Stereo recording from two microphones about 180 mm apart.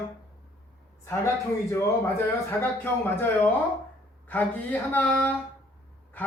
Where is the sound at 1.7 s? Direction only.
15° left (ahead or behind).